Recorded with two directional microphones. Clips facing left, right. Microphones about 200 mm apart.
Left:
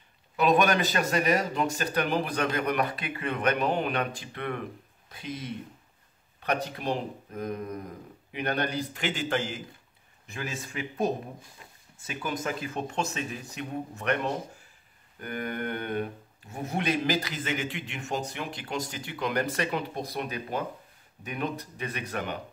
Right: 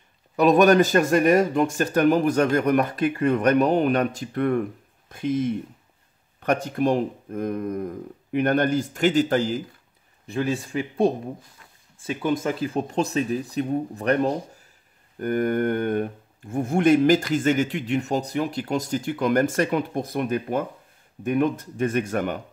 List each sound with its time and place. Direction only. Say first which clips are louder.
0.4 s speech: right 8 dB; 40° right (ahead or behind)
15.1 s speech: right 11 dB; 45° right (ahead or behind)